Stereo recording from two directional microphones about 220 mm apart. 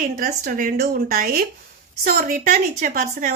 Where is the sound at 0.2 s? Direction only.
40° right (ahead or behind).